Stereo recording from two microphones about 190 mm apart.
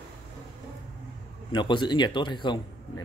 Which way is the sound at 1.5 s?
25° left (ahead or behind).